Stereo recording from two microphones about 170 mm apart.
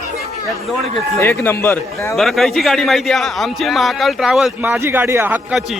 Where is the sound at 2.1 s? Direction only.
Centre (ahead or behind).